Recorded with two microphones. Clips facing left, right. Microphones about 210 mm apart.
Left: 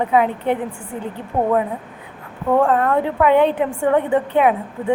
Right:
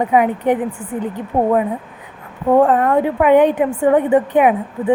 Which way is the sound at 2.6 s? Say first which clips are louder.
Right 2 dB; 15° right (ahead or behind).